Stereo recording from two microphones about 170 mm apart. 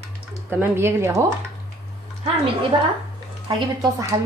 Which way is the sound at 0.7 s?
15° right (ahead or behind).